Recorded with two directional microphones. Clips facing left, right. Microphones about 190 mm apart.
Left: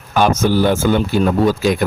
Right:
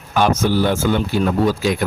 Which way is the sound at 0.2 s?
45° left (ahead or behind).